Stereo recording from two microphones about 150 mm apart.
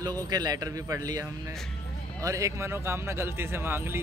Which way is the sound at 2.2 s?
20° right (ahead or behind).